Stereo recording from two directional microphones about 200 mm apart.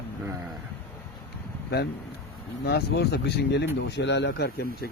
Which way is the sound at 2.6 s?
55° left (ahead or behind).